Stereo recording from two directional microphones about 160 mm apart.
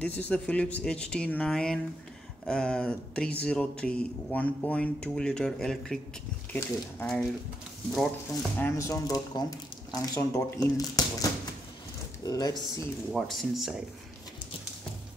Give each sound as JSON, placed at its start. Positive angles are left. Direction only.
{"t": 0.0, "sound": "speech", "side_deg": 10}
{"t": 8.6, "sound": "speech", "side_deg": 20}
{"t": 12.3, "sound": "speech", "side_deg": 25}
{"t": 13.1, "sound": "speech", "side_deg": 0}